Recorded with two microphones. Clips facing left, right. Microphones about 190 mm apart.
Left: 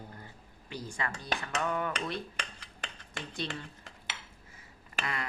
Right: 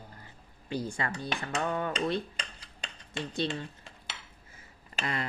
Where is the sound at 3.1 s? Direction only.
25° right (ahead or behind).